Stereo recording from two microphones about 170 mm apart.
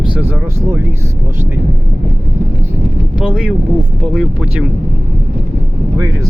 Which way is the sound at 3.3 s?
5° right (ahead or behind).